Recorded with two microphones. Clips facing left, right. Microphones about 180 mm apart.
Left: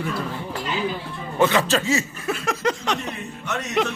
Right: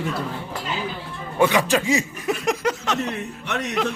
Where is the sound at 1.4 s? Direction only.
15° right (ahead or behind).